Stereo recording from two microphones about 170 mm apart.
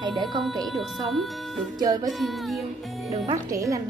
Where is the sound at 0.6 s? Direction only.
Centre (ahead or behind).